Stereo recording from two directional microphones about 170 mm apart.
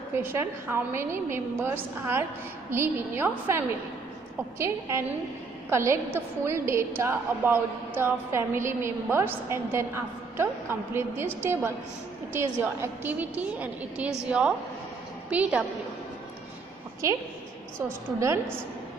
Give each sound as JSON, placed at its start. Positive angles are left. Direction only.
{"t": 0.1, "sound": "a woman's voice", "side_deg": -15}
{"t": 15.2, "sound": "a woman's voice", "side_deg": -10}
{"t": 17.8, "sound": "a woman's voice", "side_deg": -15}